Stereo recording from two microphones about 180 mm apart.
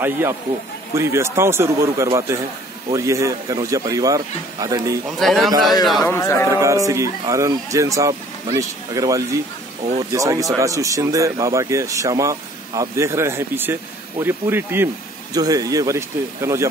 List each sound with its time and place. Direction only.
0.0 s a man's voice: 15° right (ahead or behind)
5.2 s a man's voice: centre (ahead or behind)
6.0 s a man's voice: 15° left (ahead or behind)
6.5 s a man's voice: 15° right (ahead or behind)